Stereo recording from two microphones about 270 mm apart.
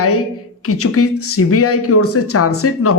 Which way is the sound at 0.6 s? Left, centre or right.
Left.